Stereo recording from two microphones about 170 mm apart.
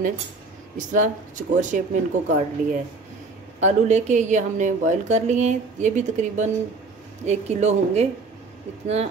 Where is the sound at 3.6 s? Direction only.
45° right (ahead or behind).